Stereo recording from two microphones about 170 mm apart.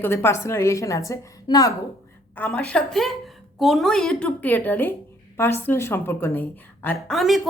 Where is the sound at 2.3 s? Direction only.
10° left (ahead or behind).